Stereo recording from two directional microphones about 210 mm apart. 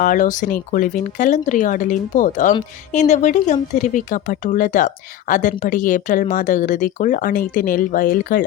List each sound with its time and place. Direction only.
0.0 s speech: 40° left (ahead or behind)